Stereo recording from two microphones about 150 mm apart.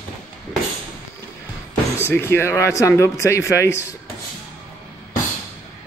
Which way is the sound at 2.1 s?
15° left (ahead or behind).